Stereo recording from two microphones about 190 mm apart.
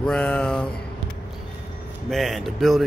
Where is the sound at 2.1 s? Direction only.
Centre (ahead or behind).